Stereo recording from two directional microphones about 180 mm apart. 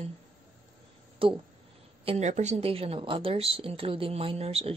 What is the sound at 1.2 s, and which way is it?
Speech, 30° right (ahead or behind).